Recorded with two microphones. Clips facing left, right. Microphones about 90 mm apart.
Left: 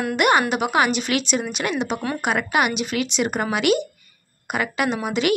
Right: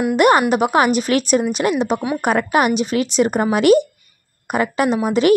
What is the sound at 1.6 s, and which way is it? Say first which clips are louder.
A woman's voice: right 6 dB; 30° right (ahead or behind).